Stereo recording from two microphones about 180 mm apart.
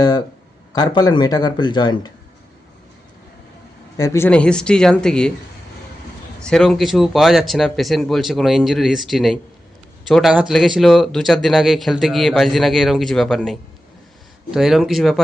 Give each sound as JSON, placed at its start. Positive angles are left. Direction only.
{"t": 0.7, "sound": "a man's voice", "side_deg": 20}
{"t": 3.9, "sound": "a man's voice", "side_deg": 15}
{"t": 6.4, "sound": "a man's voice", "side_deg": 5}